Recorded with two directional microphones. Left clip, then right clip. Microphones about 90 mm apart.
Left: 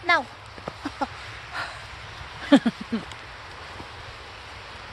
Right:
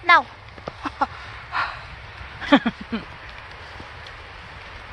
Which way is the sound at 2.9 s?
60° left (ahead or behind).